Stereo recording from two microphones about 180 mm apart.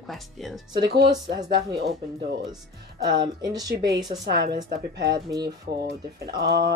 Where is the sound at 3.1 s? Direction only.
20° right (ahead or behind).